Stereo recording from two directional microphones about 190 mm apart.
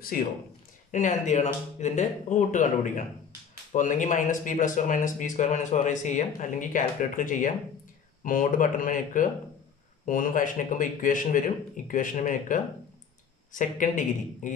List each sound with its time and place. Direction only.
0.1 s speech: 50° left (ahead or behind)